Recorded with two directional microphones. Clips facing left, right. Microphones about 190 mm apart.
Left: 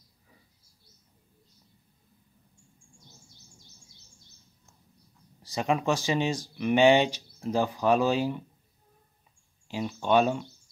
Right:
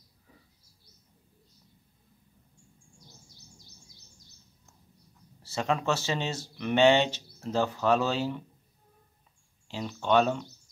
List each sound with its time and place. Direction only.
3.1 s bird: 40° right (ahead or behind)
5.4 s speech: 15° left (ahead or behind)
9.7 s speech: 10° left (ahead or behind)